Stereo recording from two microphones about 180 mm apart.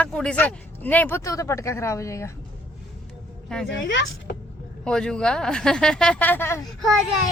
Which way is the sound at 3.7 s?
85° left.